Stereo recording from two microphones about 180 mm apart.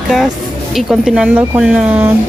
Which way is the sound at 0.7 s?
Centre (ahead or behind).